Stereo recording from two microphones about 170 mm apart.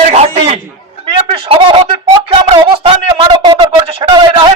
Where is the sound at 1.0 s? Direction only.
30° right (ahead or behind).